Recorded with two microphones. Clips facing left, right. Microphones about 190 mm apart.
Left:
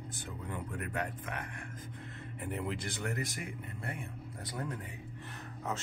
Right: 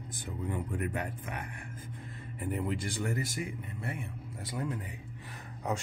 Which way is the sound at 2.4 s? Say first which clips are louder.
Right 4 dB; centre (ahead or behind).